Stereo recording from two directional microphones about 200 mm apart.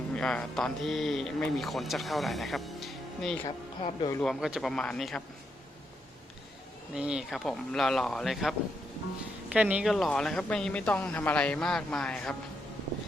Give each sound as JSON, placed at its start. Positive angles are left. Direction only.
{"t": 0.1, "sound": "speech", "side_deg": 5}
{"t": 3.4, "sound": "speech", "side_deg": 25}
{"t": 4.2, "sound": "speech", "side_deg": 0}
{"t": 6.9, "sound": "speech", "side_deg": -5}